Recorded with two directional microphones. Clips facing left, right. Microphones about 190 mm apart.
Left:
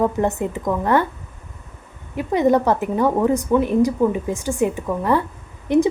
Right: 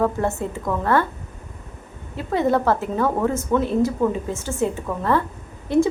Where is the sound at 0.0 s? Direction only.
15° left (ahead or behind).